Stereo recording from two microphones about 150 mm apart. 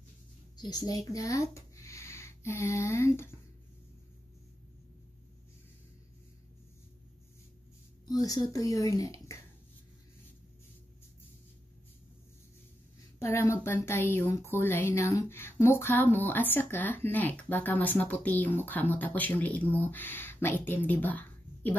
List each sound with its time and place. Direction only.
0.6 s speech: 25° left (ahead or behind)
8.1 s speech: 25° left (ahead or behind)
13.2 s speech: 20° left (ahead or behind)